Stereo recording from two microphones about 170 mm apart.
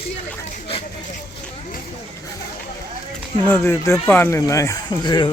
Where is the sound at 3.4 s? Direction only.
15° left (ahead or behind).